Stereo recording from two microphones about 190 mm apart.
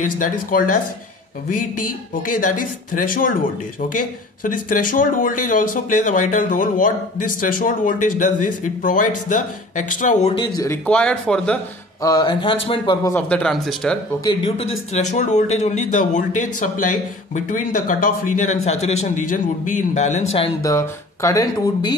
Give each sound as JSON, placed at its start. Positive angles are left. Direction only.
{"t": 0.2, "sound": "speech", "side_deg": 45}
{"t": 10.6, "sound": "speech", "side_deg": 10}
{"t": 12.0, "sound": "speech", "side_deg": 20}
{"t": 13.1, "sound": "speech", "side_deg": 5}
{"t": 14.2, "sound": "speech", "side_deg": 25}
{"t": 14.9, "sound": "speech", "side_deg": 40}
{"t": 20.6, "sound": "speech", "side_deg": 15}